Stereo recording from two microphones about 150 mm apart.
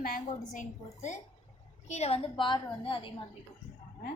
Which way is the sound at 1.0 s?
50° left (ahead or behind).